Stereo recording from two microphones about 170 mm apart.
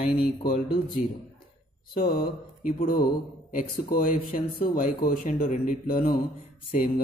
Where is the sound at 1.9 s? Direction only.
60° left (ahead or behind).